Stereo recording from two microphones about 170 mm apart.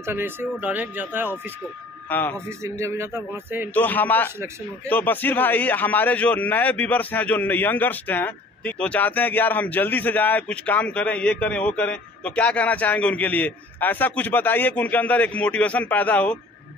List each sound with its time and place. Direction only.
0.0 s speech: 15° right (ahead or behind)
2.0 s speech: 10° left (ahead or behind)
2.3 s speech: 15° right (ahead or behind)
3.7 s a man's voice: 10° left (ahead or behind)